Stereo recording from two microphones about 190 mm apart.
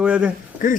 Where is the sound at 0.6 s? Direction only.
45° left (ahead or behind).